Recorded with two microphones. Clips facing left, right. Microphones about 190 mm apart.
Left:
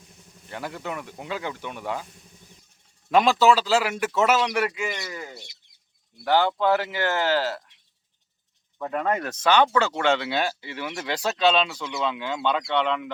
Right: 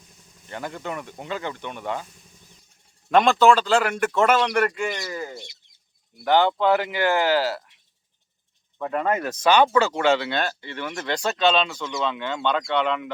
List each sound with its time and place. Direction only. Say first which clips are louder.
0.5 s speech: right 1 dB; 5° left (ahead or behind)
3.1 s speech: right 2 dB; 5° left (ahead or behind)
5.0 s speech: right 5 dB; 35° right (ahead or behind)
6.7 s speech: right 3 dB; 15° right (ahead or behind)
8.8 s speech: right 2 dB; centre (ahead or behind)
10.2 s speech: even; 10° left (ahead or behind)